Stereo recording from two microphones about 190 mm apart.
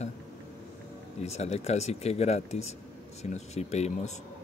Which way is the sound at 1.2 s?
35° left (ahead or behind).